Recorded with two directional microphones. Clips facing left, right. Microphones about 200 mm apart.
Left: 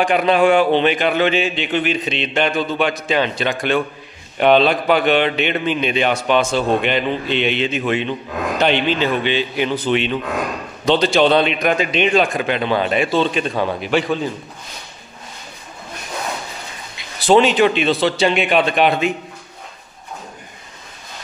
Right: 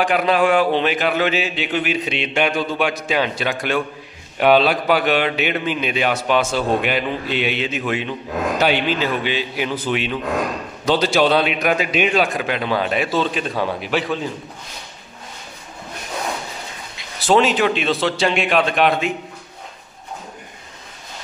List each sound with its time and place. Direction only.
0.0 s a man's voice: centre (ahead or behind)
17.2 s a man's voice: centre (ahead or behind)